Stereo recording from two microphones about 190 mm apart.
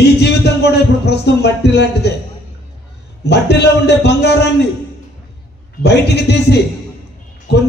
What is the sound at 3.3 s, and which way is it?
A man's voice, 60° left (ahead or behind).